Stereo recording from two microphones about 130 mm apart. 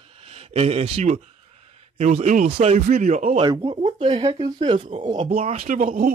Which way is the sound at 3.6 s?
50° right (ahead or behind).